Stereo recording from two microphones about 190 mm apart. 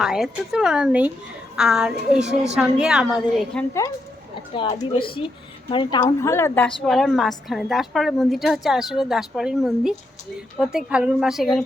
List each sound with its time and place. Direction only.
0.0 s a woman's voice: centre (ahead or behind)
4.8 s a woman's voice: 25° left (ahead or behind); by 11.6 s centre (ahead or behind)